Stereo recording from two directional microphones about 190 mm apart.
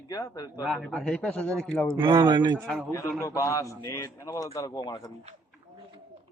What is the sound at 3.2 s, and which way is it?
A man's voice, 15° left (ahead or behind).